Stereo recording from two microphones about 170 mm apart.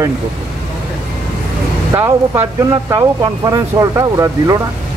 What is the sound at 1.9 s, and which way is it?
Speech, 15° right (ahead or behind).